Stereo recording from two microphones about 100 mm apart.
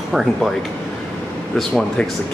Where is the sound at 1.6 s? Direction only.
5° left (ahead or behind).